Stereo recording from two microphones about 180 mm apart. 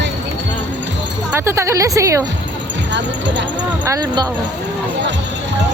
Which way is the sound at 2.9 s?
80° right.